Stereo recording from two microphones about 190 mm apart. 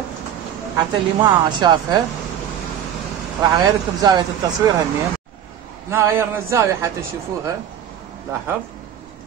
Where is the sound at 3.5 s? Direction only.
20° right (ahead or behind).